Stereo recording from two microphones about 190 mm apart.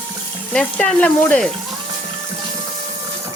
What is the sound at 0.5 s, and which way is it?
Frying, 5° left (ahead or behind).